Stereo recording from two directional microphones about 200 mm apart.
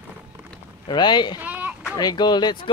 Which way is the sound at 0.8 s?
20° left (ahead or behind).